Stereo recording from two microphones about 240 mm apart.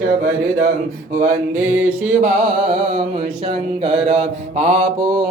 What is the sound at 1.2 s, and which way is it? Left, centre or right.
Mantra, right.